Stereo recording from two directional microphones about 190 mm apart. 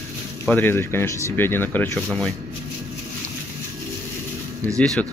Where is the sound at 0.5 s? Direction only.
10° left (ahead or behind).